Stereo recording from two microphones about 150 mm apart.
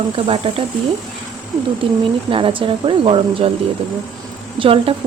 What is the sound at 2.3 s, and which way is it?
Speech, 35° right (ahead or behind).